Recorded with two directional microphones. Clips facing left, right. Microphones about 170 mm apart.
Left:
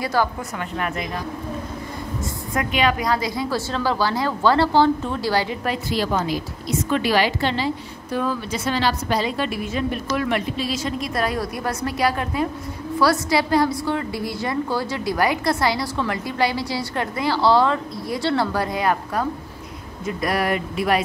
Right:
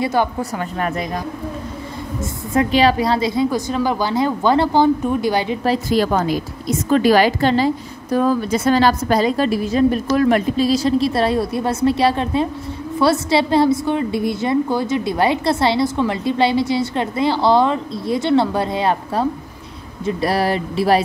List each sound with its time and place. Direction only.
0.0 s a woman's voice: 20° right (ahead or behind)
0.4 s a woman's voice: 35° right (ahead or behind)
2.5 s a woman's voice: 30° right (ahead or behind)
5.7 s a woman's voice: 45° right (ahead or behind)